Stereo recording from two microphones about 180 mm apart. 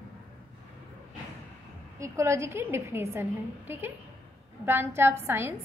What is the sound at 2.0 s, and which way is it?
A woman's voice, 15° right (ahead or behind).